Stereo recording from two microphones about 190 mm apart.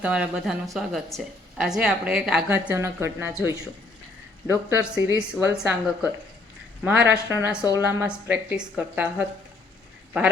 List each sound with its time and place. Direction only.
0.0 s a woman's voice: 5° right (ahead or behind)
4.4 s a woman's voice: 10° right (ahead or behind)